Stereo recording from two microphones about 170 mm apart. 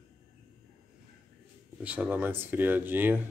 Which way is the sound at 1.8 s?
10° right (ahead or behind).